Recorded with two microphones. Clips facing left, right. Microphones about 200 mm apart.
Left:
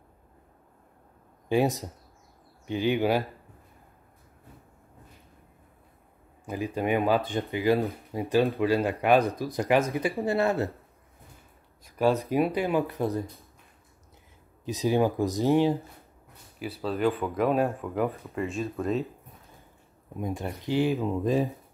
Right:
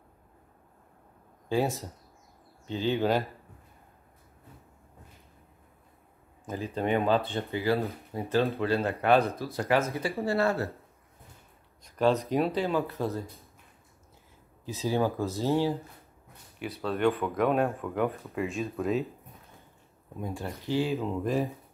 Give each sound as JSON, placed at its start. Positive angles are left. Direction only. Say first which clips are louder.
{"t": 1.5, "sound": "speech", "louder": "left 3 dB", "side_deg": 15}
{"t": 6.4, "sound": "speech", "louder": "left 2 dB", "side_deg": 10}
{"t": 11.8, "sound": "speech", "louder": "left 1 dB", "side_deg": 10}
{"t": 14.6, "sound": "speech", "louder": "left 4 dB", "side_deg": 15}
{"t": 16.8, "sound": "speech", "louder": "even", "side_deg": 0}
{"t": 20.2, "sound": "speech", "louder": "left 3 dB", "side_deg": 15}